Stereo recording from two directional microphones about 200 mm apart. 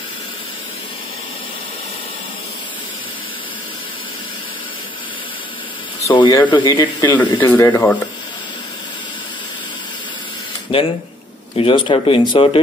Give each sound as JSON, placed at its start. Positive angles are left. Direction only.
{"t": 6.0, "sound": "speech", "side_deg": 20}
{"t": 10.7, "sound": "speech", "side_deg": 25}